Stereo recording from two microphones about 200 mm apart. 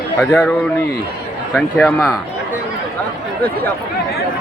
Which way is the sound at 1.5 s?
10° left (ahead or behind).